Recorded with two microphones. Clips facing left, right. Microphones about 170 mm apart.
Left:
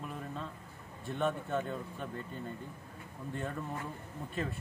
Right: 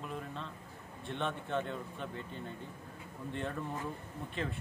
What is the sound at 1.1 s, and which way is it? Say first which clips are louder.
Speech: left 3 dB; 5° left (ahead or behind).